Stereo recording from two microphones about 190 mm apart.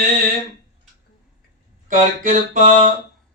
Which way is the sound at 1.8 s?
45° right (ahead or behind).